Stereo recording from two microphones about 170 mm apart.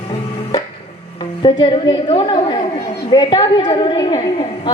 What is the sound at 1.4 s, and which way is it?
A woman's voice, 30° left (ahead or behind).